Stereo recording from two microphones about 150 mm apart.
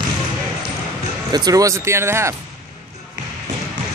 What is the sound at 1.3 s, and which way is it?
Speech, 25° right (ahead or behind).